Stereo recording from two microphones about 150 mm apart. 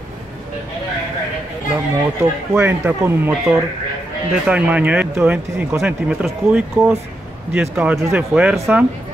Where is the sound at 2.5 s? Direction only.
15° right (ahead or behind).